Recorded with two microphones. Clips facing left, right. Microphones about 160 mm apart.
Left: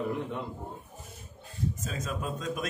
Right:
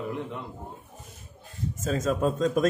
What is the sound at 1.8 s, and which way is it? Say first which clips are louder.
Speech: right 10 dB; 45° right (ahead or behind).